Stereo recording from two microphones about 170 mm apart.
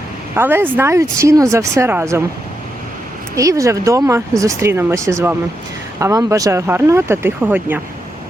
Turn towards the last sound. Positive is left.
turn(degrees=-10)  # may be behind; listen again after turning